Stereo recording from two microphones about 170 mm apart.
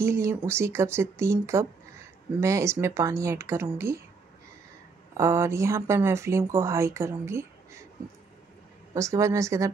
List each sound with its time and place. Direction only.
0.0 s speech: 15° right (ahead or behind)
5.1 s speech: 15° right (ahead or behind)
8.9 s speech: 20° right (ahead or behind)